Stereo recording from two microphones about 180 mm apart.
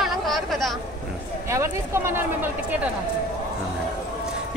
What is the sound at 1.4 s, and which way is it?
Speech, 15° right (ahead or behind).